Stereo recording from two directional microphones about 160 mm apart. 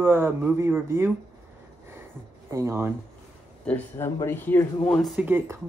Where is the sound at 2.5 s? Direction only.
15° right (ahead or behind).